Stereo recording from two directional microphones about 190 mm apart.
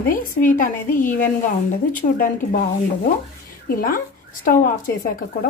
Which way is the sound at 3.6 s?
50° left (ahead or behind).